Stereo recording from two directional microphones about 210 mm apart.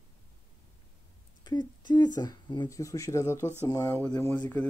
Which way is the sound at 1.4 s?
20° left (ahead or behind).